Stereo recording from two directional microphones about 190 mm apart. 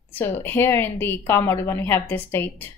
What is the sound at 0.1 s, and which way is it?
A woman's voice, 10° left (ahead or behind).